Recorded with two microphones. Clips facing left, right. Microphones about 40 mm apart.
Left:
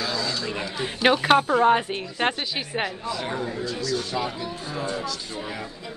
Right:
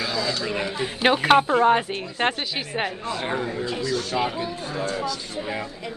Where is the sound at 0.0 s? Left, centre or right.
Centre.